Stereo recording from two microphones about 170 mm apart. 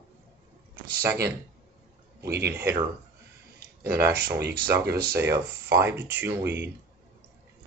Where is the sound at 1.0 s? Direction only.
15° right (ahead or behind).